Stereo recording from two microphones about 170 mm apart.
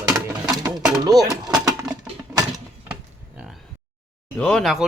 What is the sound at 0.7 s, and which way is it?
Speech, centre (ahead or behind).